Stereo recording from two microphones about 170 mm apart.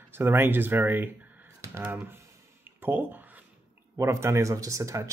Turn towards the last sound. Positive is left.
turn(degrees=-20)  # may be behind; listen again after turning